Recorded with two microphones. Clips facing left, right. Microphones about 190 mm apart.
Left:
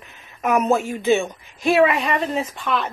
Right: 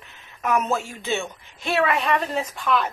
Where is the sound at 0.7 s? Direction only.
15° left (ahead or behind).